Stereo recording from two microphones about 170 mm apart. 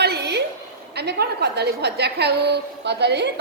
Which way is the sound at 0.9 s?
80° right.